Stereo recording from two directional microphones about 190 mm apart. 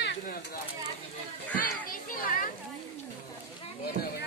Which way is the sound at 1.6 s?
45° left (ahead or behind).